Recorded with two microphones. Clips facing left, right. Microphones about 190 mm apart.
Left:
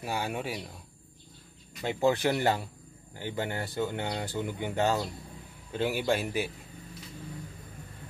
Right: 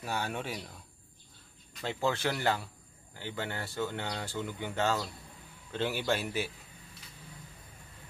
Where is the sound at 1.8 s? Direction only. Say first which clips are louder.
Left 5 dB; 15° left (ahead or behind).